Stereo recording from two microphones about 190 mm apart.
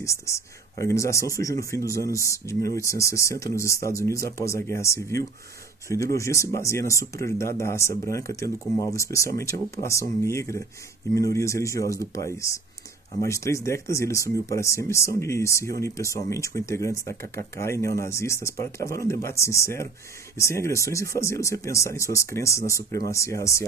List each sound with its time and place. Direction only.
0.0 s speech: 15° left (ahead or behind)